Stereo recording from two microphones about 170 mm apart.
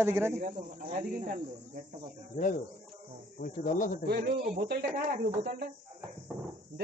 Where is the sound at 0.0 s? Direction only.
15° right (ahead or behind).